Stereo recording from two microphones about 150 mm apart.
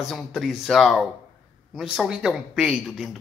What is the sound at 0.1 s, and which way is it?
Speech, centre (ahead or behind).